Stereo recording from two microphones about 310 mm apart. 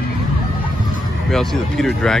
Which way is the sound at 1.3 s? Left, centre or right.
Centre.